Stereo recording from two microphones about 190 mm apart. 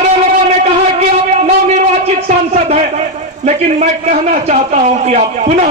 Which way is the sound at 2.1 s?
35° right (ahead or behind).